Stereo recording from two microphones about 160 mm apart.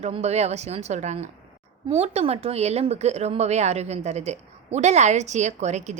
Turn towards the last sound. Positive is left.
turn(degrees=-45)  # may be behind; listen again after turning